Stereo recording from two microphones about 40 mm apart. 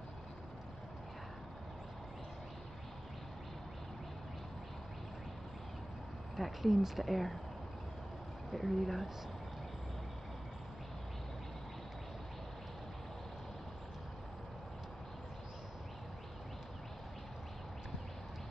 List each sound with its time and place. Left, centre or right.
6.3 s speech: centre
8.5 s speech: centre